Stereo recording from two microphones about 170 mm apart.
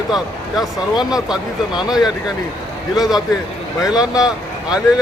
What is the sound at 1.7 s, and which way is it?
Speech, 25° left (ahead or behind).